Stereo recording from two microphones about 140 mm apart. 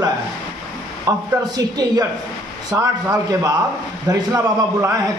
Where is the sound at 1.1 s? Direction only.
25° right (ahead or behind).